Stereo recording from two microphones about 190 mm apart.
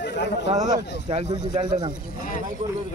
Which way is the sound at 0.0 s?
65° left (ahead or behind).